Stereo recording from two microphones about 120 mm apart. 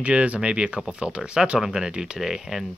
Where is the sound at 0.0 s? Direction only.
10° right (ahead or behind).